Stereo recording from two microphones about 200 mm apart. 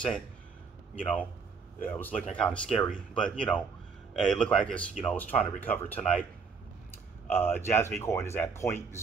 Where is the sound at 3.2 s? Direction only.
5° left (ahead or behind).